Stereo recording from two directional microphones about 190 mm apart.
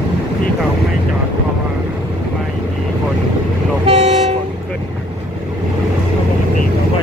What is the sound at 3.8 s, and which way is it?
Train, 35° right (ahead or behind).